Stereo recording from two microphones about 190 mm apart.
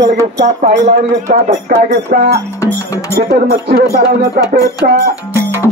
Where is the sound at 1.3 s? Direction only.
40° right (ahead or behind).